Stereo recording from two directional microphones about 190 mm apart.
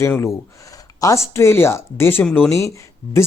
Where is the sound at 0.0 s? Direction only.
15° left (ahead or behind).